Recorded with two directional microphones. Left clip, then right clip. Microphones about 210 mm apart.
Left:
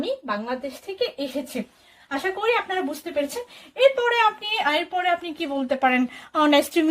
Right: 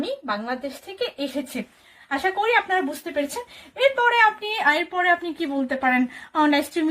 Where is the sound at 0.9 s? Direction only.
5° right (ahead or behind).